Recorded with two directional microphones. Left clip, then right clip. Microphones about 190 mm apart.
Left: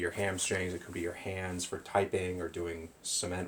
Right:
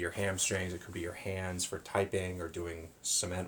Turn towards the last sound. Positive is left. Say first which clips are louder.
# even
turn(degrees=-20)  # may be behind; listen again after turning